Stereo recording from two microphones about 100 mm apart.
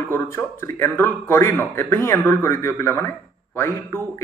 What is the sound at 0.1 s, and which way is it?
Speech, 25° left (ahead or behind).